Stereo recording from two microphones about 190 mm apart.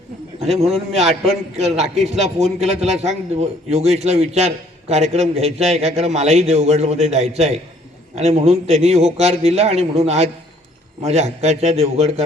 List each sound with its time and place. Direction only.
0.3 s a man's voice: 35° right (ahead or behind)